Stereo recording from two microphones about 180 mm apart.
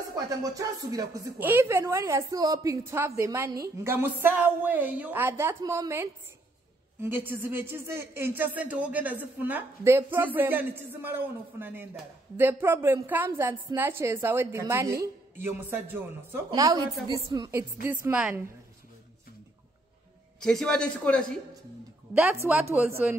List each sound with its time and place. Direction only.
0.1 s speech: 20° right (ahead or behind)
16.4 s a woman's voice: 20° right (ahead or behind)
20.3 s a man's voice: 5° left (ahead or behind)
22.1 s speech: 10° right (ahead or behind)